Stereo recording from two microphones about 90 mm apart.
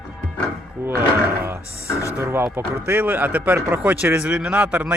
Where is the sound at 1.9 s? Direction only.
35° left (ahead or behind).